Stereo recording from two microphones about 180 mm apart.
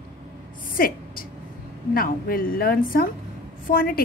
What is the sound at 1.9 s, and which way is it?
A woman's voice, 55° left (ahead or behind).